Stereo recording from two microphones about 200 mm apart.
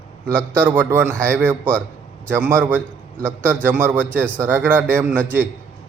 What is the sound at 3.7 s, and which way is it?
Speech, 10° right (ahead or behind).